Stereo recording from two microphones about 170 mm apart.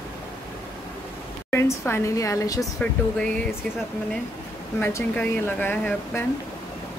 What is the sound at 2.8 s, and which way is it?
Speech, 5° left (ahead or behind).